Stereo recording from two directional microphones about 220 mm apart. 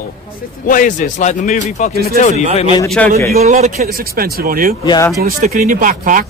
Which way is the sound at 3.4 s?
30° right (ahead or behind).